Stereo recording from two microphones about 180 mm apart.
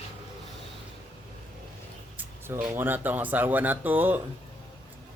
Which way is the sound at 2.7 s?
10° right (ahead or behind).